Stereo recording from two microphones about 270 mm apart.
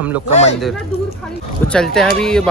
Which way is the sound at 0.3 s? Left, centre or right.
Left.